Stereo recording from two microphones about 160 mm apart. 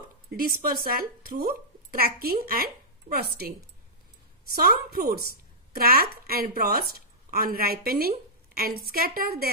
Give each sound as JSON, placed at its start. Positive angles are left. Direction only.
{"t": 0.7, "sound": "a woman's voice", "side_deg": -65}
{"t": 4.6, "sound": "a woman's voice", "side_deg": -70}